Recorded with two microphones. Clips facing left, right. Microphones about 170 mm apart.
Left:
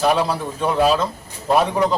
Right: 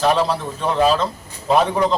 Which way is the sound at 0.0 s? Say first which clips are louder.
Right 1 dB; 10° left (ahead or behind).